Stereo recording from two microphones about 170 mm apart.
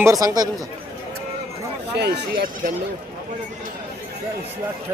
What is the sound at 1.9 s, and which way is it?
Speech, 75° right (ahead or behind).